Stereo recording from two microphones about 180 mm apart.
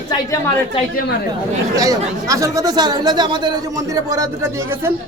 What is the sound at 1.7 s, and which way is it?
Speech, 20° right (ahead or behind).